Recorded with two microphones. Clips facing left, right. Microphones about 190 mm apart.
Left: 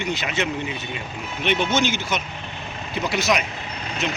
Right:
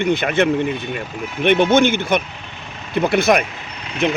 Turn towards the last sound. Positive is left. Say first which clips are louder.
# right 7 dB
turn(degrees=-55)  # may be behind; listen again after turning